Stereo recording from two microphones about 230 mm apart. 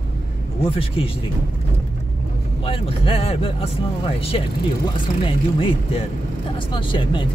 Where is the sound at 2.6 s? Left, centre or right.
Left.